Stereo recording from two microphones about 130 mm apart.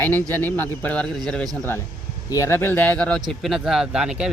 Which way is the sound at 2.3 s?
25° left (ahead or behind).